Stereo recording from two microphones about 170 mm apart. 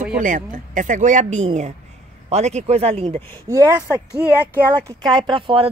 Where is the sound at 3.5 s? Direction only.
20° right (ahead or behind).